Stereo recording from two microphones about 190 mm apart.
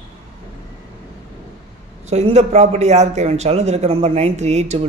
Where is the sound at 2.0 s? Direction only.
35° right (ahead or behind).